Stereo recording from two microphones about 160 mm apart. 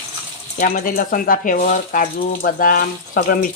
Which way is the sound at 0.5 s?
60° left (ahead or behind).